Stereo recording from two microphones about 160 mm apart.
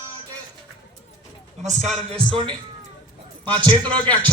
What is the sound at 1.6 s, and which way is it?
Speech, 40° right (ahead or behind).